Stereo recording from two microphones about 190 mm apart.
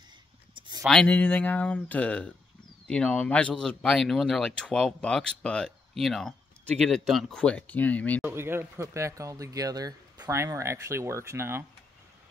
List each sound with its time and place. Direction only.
0.6 s a sound: 25° right (ahead or behind)
0.8 s speech: 5° left (ahead or behind)
8.2 s speech: 10° right (ahead or behind)